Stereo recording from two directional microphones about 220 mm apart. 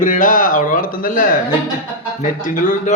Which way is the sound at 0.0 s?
35° left (ahead or behind).